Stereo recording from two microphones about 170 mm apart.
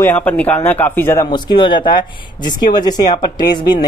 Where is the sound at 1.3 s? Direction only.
30° left (ahead or behind).